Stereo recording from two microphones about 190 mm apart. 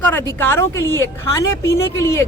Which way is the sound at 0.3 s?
15° left (ahead or behind).